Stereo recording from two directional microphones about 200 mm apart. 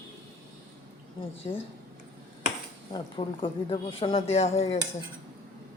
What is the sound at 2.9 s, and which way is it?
A woman's voice, 25° left (ahead or behind).